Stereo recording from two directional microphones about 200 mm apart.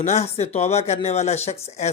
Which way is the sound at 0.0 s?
35° left (ahead or behind).